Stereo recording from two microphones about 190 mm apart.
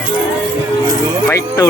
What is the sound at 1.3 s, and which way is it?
Speech, 15° left (ahead or behind).